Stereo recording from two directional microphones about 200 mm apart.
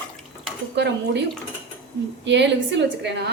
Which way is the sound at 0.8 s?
60° right (ahead or behind).